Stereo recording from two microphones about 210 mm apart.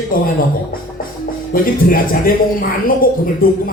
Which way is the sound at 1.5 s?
40° left (ahead or behind).